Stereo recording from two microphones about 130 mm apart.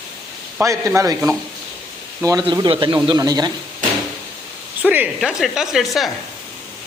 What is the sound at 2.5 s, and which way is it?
A man's voice, 40° right (ahead or behind).